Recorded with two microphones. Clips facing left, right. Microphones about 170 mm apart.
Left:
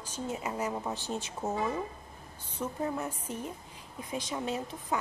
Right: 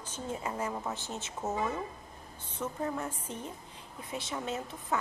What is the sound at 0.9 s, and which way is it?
Speech, 20° right (ahead or behind).